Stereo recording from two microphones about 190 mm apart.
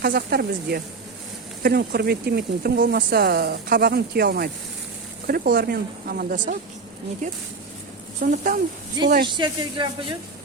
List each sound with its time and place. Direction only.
0.0 s speech: 55° right (ahead or behind)
9.2 s speech: 25° right (ahead or behind)